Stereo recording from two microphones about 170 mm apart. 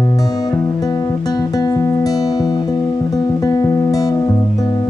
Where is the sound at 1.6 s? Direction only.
20° left (ahead or behind).